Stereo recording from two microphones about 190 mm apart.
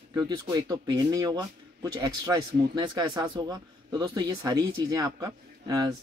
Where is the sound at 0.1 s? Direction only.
20° right (ahead or behind).